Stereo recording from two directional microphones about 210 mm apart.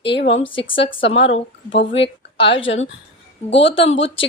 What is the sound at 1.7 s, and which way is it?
Speech, 55° left (ahead or behind).